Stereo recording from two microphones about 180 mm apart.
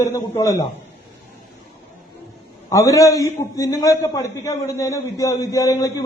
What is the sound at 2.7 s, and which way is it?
A man's voice, 15° left (ahead or behind).